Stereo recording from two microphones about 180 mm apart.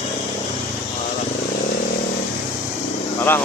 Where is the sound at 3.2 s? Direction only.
10° left (ahead or behind).